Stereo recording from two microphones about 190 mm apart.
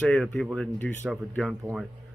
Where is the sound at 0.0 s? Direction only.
5° left (ahead or behind).